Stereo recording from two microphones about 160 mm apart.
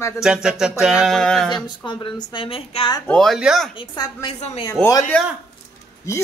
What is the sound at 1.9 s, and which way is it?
A woman's voice, 30° left (ahead or behind).